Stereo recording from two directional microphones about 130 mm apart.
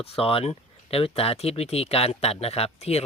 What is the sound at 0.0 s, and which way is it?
Speech, 45° left (ahead or behind).